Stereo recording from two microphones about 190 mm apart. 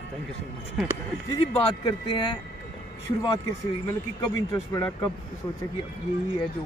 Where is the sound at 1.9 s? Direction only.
25° left (ahead or behind).